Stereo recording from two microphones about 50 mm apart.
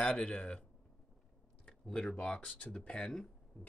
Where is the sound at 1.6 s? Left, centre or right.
Centre.